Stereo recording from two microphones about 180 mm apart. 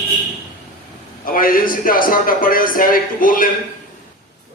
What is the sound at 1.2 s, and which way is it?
A man's voice, 50° left (ahead or behind).